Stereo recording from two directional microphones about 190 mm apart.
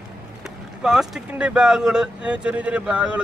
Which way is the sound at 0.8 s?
5° right (ahead or behind).